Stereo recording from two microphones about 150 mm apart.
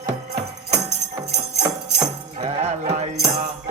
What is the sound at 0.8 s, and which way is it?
Music, 45° right (ahead or behind).